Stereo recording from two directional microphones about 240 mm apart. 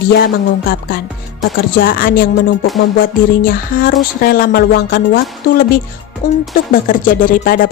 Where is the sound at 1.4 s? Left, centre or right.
Left.